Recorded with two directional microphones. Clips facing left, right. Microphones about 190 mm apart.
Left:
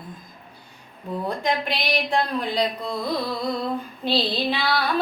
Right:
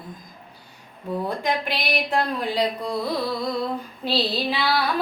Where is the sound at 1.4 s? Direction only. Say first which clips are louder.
Left 1 dB; 5° right (ahead or behind).